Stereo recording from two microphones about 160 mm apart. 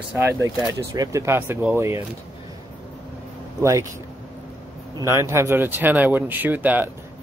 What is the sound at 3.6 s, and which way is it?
Speech, 20° right (ahead or behind).